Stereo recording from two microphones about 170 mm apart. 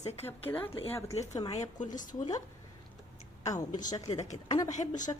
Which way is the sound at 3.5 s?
20° left (ahead or behind).